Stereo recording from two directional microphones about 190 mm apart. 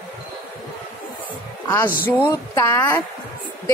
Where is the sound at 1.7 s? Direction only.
15° left (ahead or behind).